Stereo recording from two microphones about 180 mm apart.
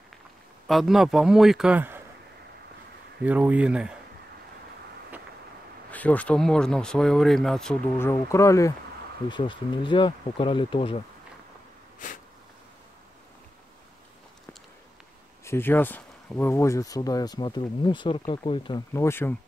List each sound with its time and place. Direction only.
0.7 s speech: centre (ahead or behind)
3.3 s speech: 10° right (ahead or behind)
5.9 s speech: 10° left (ahead or behind)
8.0 s speech: 15° left (ahead or behind)
12.0 s a sound: 45° left (ahead or behind)
15.4 s speech: 10° left (ahead or behind)
18.9 s speech: 15° left (ahead or behind)